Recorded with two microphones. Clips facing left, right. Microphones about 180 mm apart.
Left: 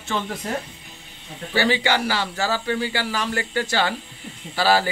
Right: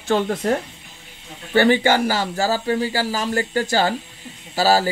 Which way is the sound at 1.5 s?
50° right (ahead or behind).